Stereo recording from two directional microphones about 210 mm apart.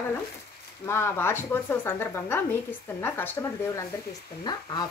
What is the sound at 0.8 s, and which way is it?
Speech, 10° left (ahead or behind).